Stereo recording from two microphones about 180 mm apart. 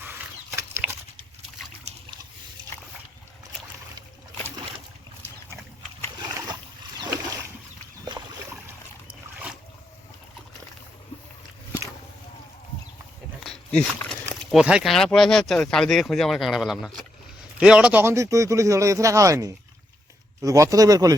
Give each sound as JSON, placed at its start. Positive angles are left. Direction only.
{"t": 0.0, "sound": "dog", "side_deg": -10}
{"t": 13.4, "sound": "dog", "side_deg": 5}
{"t": 14.5, "sound": "speech", "side_deg": -5}